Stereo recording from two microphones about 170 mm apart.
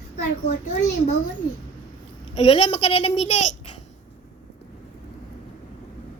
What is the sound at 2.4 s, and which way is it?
A child's voice, 35° left (ahead or behind).